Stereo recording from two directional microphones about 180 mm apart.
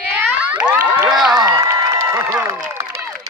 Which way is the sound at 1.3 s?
20° right (ahead or behind).